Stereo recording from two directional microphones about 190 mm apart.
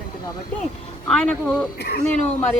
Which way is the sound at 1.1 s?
5° left (ahead or behind).